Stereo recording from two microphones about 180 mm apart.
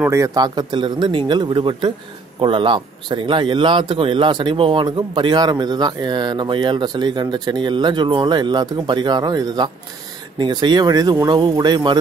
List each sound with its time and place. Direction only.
0.0 s speech: 15° right (ahead or behind)